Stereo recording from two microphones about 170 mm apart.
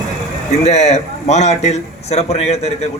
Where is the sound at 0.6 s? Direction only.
40° left (ahead or behind).